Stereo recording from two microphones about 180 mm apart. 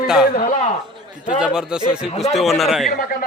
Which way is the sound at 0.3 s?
50° left (ahead or behind).